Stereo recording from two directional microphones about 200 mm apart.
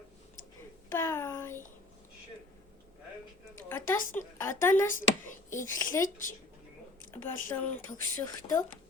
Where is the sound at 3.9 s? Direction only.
10° left (ahead or behind).